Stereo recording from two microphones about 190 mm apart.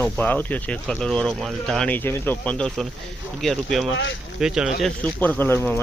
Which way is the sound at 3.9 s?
75° left (ahead or behind).